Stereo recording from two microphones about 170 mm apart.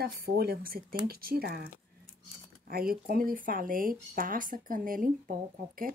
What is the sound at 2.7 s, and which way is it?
Speech, 60° right (ahead or behind).